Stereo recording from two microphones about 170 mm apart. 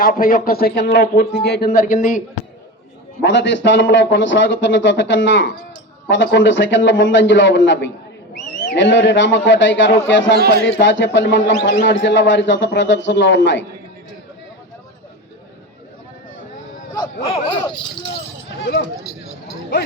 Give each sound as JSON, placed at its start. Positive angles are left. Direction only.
{"t": 0.0, "sound": "a man's voice", "side_deg": 55}
{"t": 3.2, "sound": "a man's voice", "side_deg": 90}
{"t": 10.4, "sound": "a man's voice", "side_deg": 80}